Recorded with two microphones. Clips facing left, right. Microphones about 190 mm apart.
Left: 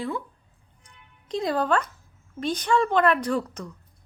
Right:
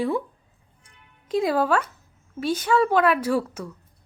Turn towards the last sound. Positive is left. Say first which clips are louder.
# right 3 dB
turn(degrees=-5)  # may be behind; listen again after turning